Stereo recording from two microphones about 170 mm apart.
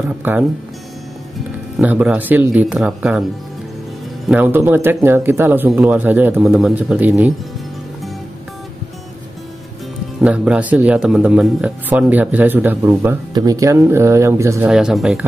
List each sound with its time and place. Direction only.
0.2 s a man's voice: 10° right (ahead or behind)
1.8 s a man's voice: 10° right (ahead or behind)
4.3 s a man's voice: 10° right (ahead or behind)
10.2 s a man's voice: 5° right (ahead or behind)
14.7 s speech: 5° right (ahead or behind)